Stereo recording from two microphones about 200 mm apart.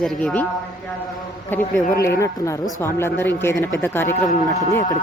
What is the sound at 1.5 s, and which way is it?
Speech, 10° left (ahead or behind).